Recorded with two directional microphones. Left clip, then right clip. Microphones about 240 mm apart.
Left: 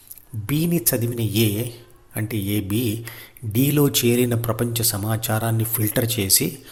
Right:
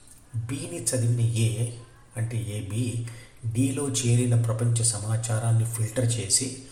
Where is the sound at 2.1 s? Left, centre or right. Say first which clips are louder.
Left 11 dB; left.